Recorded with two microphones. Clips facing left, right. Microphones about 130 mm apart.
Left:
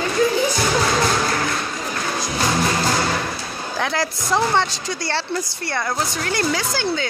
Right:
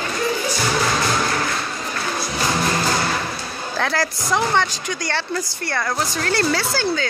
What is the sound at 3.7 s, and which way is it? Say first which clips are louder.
A woman's voice: right 1 dB; 20° left (ahead or behind).